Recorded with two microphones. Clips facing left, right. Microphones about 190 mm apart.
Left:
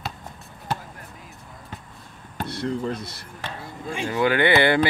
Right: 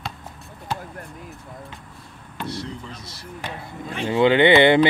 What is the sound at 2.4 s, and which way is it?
Speech, 55° left (ahead or behind).